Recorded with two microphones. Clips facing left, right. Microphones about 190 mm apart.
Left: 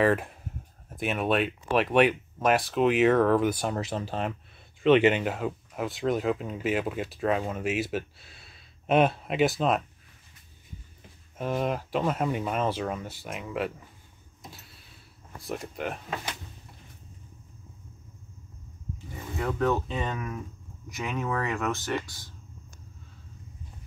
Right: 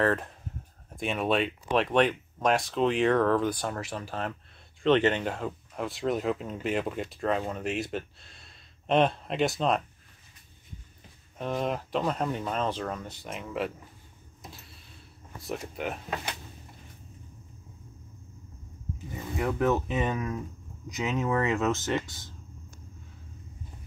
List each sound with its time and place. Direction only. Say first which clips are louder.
0.0 s speech: left 3 dB; 10° left (ahead or behind)
3.7 s speech: left 4 dB; 25° left (ahead or behind)
4.8 s speech: left 3 dB; 10° left (ahead or behind)
11.3 s speech: left 2 dB; 5° left (ahead or behind)
14.4 s a sound: even; centre (ahead or behind)
15.4 s speech: even; centre (ahead or behind)
19.3 s speech: right 1 dB; 20° right (ahead or behind)